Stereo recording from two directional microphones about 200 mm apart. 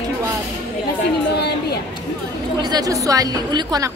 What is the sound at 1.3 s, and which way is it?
Speech, 55° left (ahead or behind).